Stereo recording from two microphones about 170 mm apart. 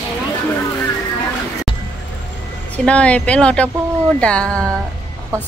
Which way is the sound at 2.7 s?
5° left (ahead or behind).